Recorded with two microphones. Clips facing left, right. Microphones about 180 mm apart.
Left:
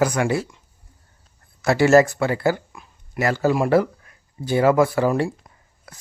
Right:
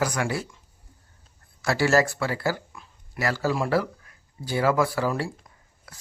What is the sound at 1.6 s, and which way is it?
Speech, 20° left (ahead or behind).